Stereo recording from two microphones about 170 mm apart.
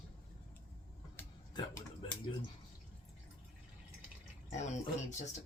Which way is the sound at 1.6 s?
30° left (ahead or behind).